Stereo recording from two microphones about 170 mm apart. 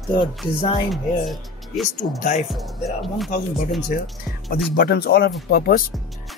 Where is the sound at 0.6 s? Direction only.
30° left (ahead or behind).